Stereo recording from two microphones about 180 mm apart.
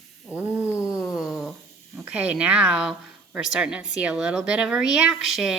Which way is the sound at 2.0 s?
5° right (ahead or behind).